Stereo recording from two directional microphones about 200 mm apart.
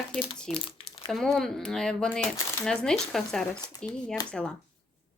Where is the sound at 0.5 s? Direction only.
25° left (ahead or behind).